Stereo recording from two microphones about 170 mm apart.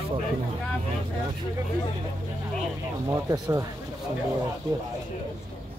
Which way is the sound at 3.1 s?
20° right (ahead or behind).